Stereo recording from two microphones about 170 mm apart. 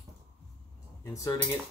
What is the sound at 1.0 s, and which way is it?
Speech, 20° left (ahead or behind).